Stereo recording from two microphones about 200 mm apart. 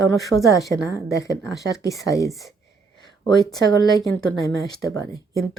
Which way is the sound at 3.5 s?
20° left (ahead or behind).